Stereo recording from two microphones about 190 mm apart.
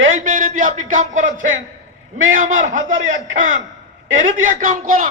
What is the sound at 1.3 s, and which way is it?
Speech, 90° right.